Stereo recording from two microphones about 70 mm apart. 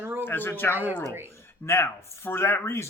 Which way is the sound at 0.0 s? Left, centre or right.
Right.